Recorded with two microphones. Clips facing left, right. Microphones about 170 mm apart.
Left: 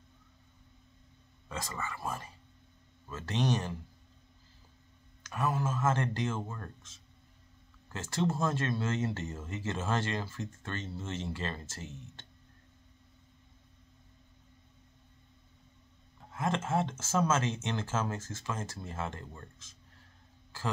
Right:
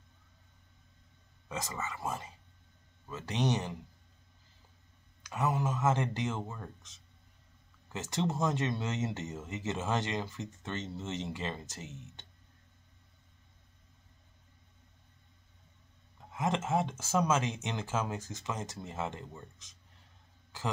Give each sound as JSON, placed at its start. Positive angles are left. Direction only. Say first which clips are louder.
{"t": 1.5, "sound": "speech", "louder": "right 1 dB", "side_deg": -20}
{"t": 5.2, "sound": "speech", "louder": "even", "side_deg": -20}
{"t": 16.3, "sound": "speech", "louder": "right 1 dB", "side_deg": -15}